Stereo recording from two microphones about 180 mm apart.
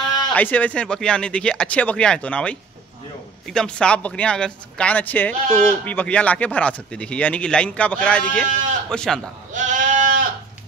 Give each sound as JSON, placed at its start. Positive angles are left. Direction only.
{"t": 0.3, "sound": "a man's voice", "side_deg": 10}
{"t": 9.5, "sound": "sheep", "side_deg": -45}